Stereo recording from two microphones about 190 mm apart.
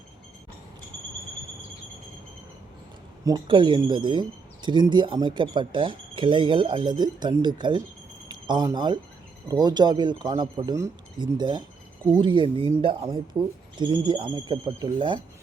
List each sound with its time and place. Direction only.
3.2 s speech: 25° right (ahead or behind)